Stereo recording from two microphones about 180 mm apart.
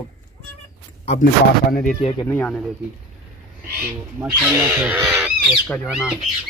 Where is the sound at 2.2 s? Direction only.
15° left (ahead or behind).